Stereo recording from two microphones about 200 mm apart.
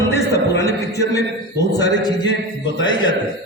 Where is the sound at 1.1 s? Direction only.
15° left (ahead or behind).